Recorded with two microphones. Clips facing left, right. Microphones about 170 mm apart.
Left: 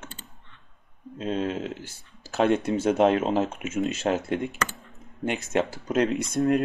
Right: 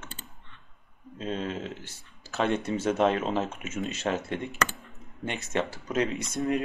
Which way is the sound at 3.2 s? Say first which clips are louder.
Left 4 dB; 45° left (ahead or behind).